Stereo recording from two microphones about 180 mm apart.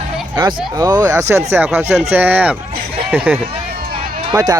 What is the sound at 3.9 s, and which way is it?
Run, 35° right (ahead or behind).